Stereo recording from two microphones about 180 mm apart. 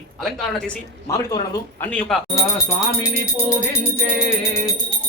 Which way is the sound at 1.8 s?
5° left (ahead or behind).